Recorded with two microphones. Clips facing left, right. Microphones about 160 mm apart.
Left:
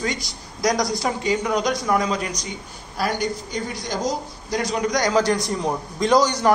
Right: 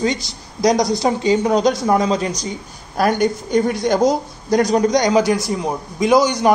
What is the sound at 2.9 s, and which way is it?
Speech, 50° right (ahead or behind).